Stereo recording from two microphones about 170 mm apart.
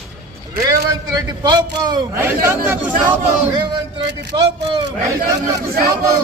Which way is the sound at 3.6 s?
30° right (ahead or behind).